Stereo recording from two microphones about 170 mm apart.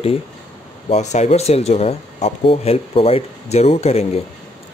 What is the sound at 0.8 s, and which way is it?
Speech, 40° left (ahead or behind).